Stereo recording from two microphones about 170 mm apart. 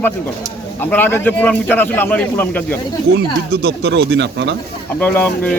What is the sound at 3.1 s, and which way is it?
Speech, 70° right (ahead or behind).